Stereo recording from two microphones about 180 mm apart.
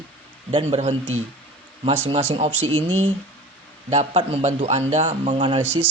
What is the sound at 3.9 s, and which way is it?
A man's voice, 35° right (ahead or behind).